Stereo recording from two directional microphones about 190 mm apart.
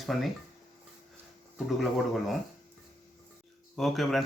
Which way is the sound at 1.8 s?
Centre (ahead or behind).